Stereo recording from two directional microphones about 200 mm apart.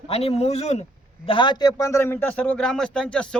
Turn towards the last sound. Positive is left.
turn(degrees=5)  # may be behind; listen again after turning